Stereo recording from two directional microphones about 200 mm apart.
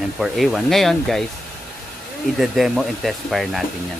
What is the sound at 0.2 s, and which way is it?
Speech, centre (ahead or behind).